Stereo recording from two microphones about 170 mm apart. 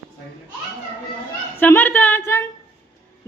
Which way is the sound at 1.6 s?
10° left (ahead or behind).